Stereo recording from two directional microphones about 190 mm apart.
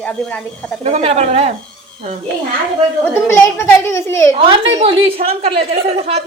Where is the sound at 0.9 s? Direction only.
35° right (ahead or behind).